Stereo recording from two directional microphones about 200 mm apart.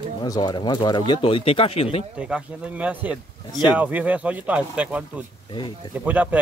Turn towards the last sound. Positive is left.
turn(degrees=-10)  # may be behind; listen again after turning